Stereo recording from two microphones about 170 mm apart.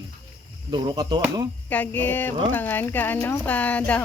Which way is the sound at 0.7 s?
25° right (ahead or behind).